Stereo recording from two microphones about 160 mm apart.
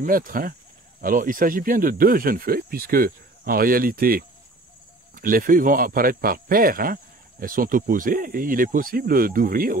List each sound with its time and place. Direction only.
0.0 s speech: 60° right (ahead or behind)